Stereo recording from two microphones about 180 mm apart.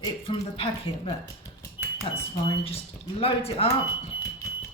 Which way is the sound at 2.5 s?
30° left (ahead or behind).